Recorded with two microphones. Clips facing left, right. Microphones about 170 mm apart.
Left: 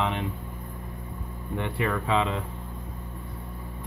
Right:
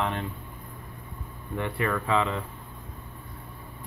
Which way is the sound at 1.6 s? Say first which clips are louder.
Even; 15° left (ahead or behind).